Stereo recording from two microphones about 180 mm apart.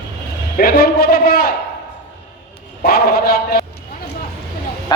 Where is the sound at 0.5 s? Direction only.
55° left (ahead or behind).